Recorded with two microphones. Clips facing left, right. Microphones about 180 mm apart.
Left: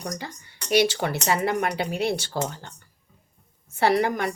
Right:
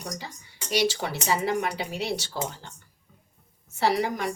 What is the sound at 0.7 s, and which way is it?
A woman's voice, 60° left (ahead or behind).